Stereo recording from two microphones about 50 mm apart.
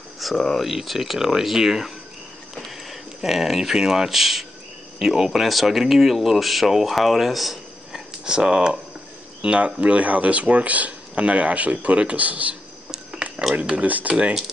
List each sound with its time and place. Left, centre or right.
0.2 s speech: centre
2.5 s a sound: centre
3.2 s speech: centre
8.3 s speech: centre
12.9 s a sound: centre
13.6 s speech: right
13.8 s speech: right